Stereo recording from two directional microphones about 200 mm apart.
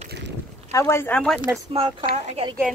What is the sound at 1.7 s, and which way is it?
Speech, 25° right (ahead or behind).